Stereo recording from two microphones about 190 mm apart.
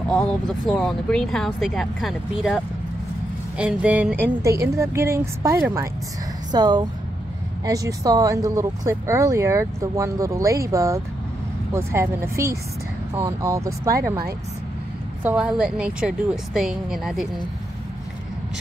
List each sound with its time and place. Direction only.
0.1 s speech: centre (ahead or behind); by 14.2 s 15° right (ahead or behind)
15.2 s speech: 5° right (ahead or behind)